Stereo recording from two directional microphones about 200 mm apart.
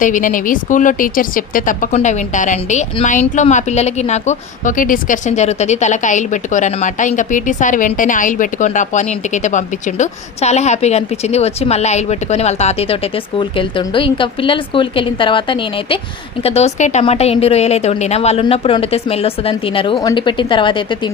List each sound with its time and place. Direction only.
0.0 s a woman's voice: 40° left (ahead or behind); by 21.1 s 25° left (ahead or behind)